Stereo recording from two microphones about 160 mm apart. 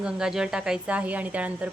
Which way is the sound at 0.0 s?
5° right (ahead or behind).